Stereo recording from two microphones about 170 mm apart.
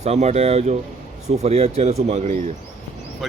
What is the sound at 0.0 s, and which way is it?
Speech, 40° right (ahead or behind).